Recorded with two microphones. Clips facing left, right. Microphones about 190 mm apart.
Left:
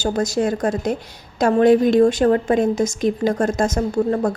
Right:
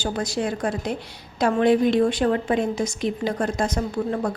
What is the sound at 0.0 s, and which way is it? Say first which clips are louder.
A woman's voice: left 6 dB; 45° left (ahead or behind).